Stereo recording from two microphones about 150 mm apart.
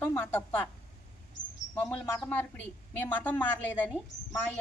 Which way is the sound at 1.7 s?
10° left (ahead or behind).